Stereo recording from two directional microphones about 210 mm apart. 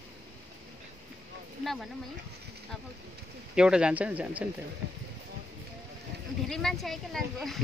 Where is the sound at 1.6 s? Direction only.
Centre (ahead or behind).